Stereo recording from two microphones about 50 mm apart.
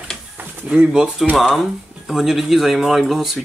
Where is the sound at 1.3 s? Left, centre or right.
Centre.